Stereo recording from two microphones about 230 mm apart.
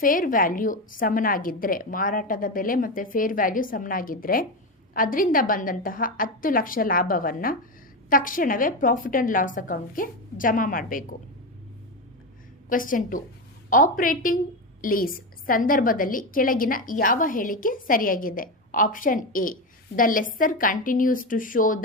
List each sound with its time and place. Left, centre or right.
0.0 s a woman's voice: left
12.6 s a woman's voice: left